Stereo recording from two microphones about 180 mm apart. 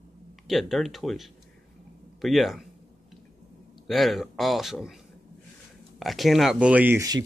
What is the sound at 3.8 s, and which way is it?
Speech, centre (ahead or behind).